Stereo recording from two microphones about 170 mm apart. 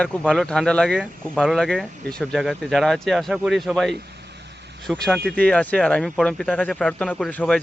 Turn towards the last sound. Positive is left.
turn(degrees=5)  # may be behind; listen again after turning